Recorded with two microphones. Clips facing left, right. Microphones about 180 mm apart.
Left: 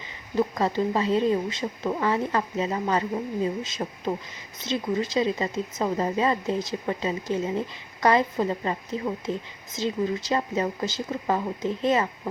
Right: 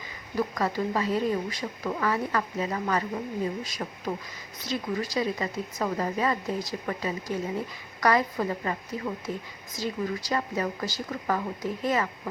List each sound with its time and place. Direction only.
0.3 s speech: 25° left (ahead or behind)